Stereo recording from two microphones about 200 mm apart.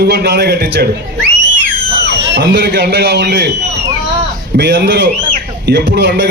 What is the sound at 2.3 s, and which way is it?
A man's voice, 60° right (ahead or behind).